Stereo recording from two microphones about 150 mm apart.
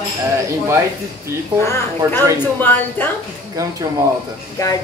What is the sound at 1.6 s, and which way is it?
Speech, 15° left (ahead or behind).